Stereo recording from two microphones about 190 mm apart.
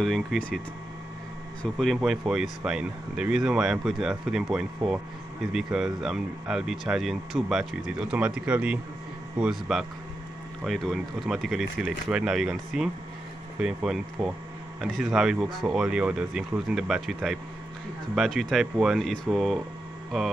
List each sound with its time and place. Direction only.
0.0 s speech: centre (ahead or behind)
1.6 s speech: centre (ahead or behind)